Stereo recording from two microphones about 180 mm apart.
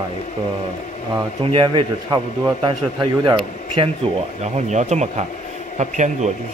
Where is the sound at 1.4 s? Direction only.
30° right (ahead or behind).